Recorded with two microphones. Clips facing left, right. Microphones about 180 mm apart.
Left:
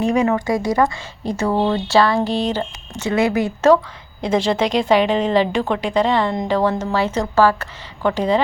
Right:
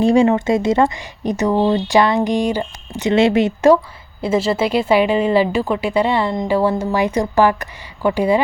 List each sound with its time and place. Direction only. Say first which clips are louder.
0.0 s speech: right 4 dB; 30° right (ahead or behind)
4.2 s speech: right 1 dB; 5° right (ahead or behind)